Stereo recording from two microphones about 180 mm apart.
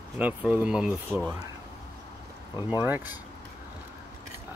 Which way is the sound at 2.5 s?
15° right (ahead or behind).